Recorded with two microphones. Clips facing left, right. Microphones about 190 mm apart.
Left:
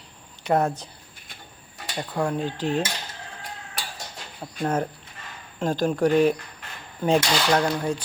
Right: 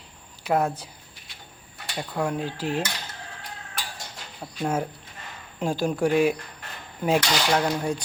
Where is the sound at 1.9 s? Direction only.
5° right (ahead or behind).